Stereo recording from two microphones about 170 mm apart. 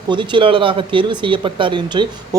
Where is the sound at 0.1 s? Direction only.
30° right (ahead or behind).